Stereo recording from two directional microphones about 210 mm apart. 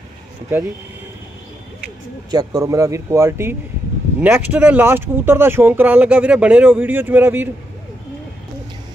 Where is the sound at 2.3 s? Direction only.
20° right (ahead or behind).